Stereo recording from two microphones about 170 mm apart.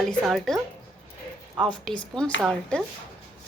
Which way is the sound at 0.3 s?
Centre (ahead or behind).